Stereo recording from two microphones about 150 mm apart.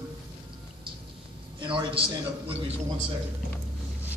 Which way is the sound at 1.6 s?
35° right (ahead or behind).